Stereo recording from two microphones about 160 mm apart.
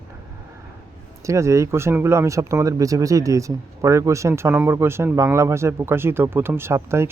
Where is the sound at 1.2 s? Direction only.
20° right (ahead or behind).